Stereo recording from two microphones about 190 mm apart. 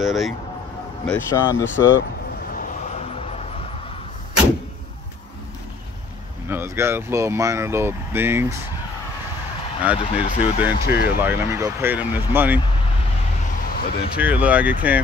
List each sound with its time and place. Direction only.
0.0 s speech: centre (ahead or behind)
1.0 s speech: 15° left (ahead or behind)
6.5 s speech: 15° right (ahead or behind)
9.9 s speech: 30° left (ahead or behind)
10.7 s speech: 55° left (ahead or behind)
11.1 s speech: 10° right (ahead or behind)
13.7 s speech: 55° left (ahead or behind)
14.1 s speech: 5° right (ahead or behind)